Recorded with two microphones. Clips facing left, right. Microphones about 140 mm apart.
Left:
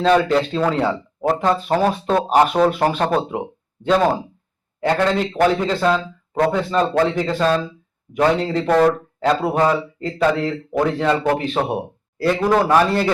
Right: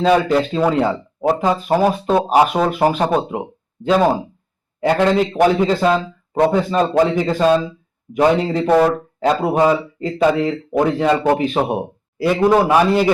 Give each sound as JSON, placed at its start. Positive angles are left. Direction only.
{"t": 0.0, "sound": "a man's voice", "side_deg": -5}
{"t": 8.7, "sound": "a man's voice", "side_deg": -10}